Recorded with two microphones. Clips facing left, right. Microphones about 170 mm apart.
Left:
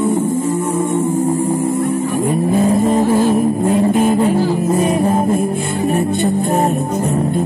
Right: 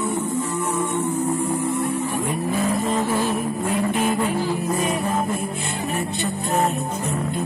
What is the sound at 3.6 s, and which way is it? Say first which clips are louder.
Vehicle: left 6 dB; 40° left (ahead or behind).